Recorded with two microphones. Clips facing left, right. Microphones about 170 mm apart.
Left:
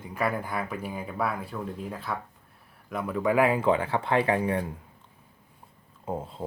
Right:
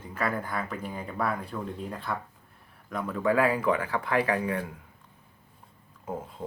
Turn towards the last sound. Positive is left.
turn(degrees=25)  # may be behind; listen again after turning